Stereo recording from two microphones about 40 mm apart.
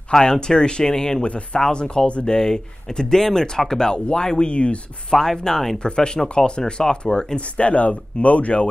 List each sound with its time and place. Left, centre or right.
0.1 s speech: centre
1.2 s speech: left
5.1 s speech: centre
5.8 s speech: left
7.3 s speech: left